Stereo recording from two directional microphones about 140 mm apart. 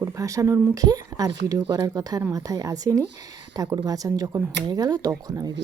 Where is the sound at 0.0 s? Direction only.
25° right (ahead or behind).